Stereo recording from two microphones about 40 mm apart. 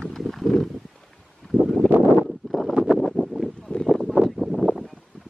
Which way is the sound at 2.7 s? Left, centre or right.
Right.